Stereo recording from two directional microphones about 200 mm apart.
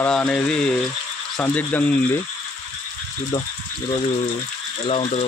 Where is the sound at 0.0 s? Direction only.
5° left (ahead or behind).